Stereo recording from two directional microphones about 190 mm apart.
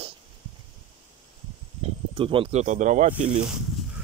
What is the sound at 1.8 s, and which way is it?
Speech, 30° right (ahead or behind).